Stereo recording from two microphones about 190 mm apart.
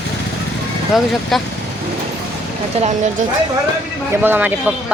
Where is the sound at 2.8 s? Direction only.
40° right (ahead or behind).